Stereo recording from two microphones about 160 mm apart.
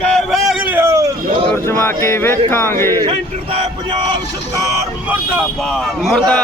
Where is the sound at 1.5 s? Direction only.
15° left (ahead or behind).